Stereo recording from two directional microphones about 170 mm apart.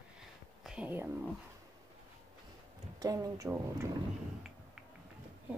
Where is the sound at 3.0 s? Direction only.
20° right (ahead or behind).